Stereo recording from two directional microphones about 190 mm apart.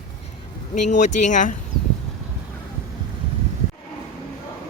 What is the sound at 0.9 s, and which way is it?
Speech, 40° left (ahead or behind).